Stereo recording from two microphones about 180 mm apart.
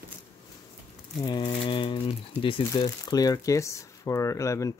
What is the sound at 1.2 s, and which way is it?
Speech, 25° left (ahead or behind).